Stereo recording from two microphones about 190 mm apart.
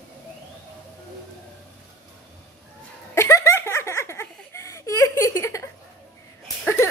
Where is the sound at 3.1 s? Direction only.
15° left (ahead or behind).